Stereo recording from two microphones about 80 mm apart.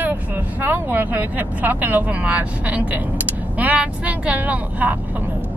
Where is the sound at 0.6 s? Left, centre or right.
Right.